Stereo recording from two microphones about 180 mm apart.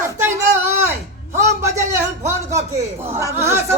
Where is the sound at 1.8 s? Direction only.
15° right (ahead or behind).